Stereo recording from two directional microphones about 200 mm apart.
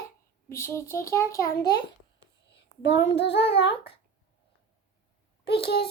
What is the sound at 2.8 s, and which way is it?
Child singing, 60° left (ahead or behind).